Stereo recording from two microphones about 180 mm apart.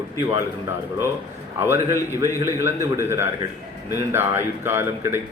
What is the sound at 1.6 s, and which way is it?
A man's voice, 15° right (ahead or behind).